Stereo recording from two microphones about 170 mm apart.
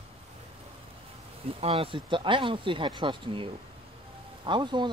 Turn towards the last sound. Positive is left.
turn(degrees=-25)  # may be behind; listen again after turning